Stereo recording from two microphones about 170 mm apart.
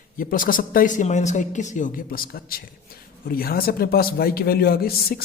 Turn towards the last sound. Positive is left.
turn(degrees=60)  # may be behind; listen again after turning